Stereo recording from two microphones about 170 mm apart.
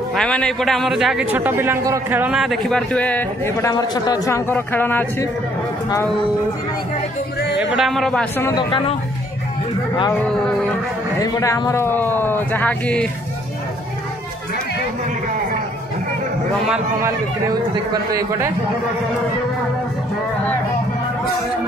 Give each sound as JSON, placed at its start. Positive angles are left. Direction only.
{"t": 0.1, "sound": "a man's voice", "side_deg": 5}
{"t": 7.5, "sound": "a man's voice", "side_deg": -5}
{"t": 8.5, "sound": "speech", "side_deg": 25}
{"t": 11.1, "sound": "a man's voice", "side_deg": 20}
{"t": 18.1, "sound": "a man's voice", "side_deg": -15}